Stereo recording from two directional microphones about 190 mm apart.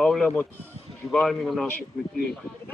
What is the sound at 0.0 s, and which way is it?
Speech, 5° left (ahead or behind).